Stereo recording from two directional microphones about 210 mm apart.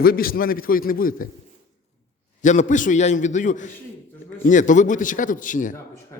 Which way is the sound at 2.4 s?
35° left (ahead or behind).